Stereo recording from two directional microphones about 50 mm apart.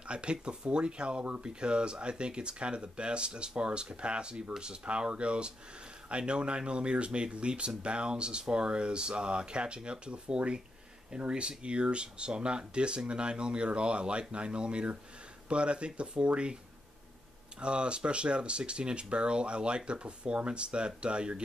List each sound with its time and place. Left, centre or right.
0.0 s speech: right
17.6 s speech: right